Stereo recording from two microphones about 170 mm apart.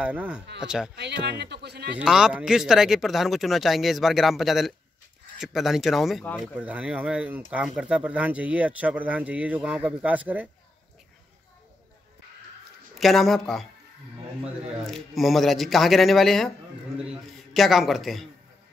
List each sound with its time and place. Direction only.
0.0 s speech: 5° right (ahead or behind)
0.9 s speech: 80° right
2.0 s speech: 5° right (ahead or behind)
13.0 s speech: centre (ahead or behind)
17.6 s speech: centre (ahead or behind)